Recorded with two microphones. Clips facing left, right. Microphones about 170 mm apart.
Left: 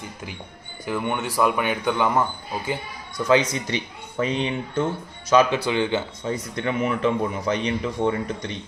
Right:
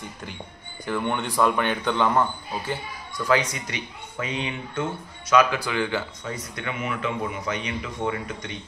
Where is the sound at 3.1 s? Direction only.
20° left (ahead or behind).